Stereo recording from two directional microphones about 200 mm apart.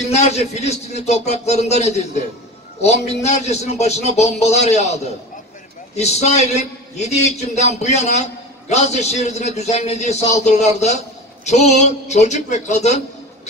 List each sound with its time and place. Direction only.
0.1 s a man's voice: 35° left (ahead or behind)